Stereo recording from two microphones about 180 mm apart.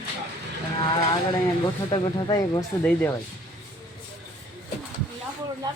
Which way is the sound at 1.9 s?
20° left (ahead or behind).